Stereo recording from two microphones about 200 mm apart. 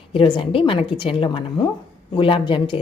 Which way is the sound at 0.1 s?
25° left (ahead or behind).